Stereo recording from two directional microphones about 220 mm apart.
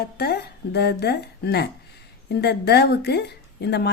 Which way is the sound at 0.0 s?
45° left (ahead or behind).